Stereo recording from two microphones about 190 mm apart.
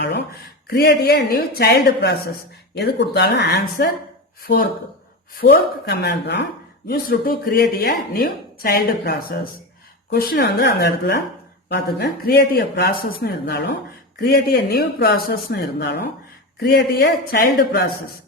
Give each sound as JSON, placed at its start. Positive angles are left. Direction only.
{"t": 0.7, "sound": "speech", "side_deg": 60}
{"t": 5.4, "sound": "speech", "side_deg": 55}
{"t": 6.8, "sound": "speech", "side_deg": 50}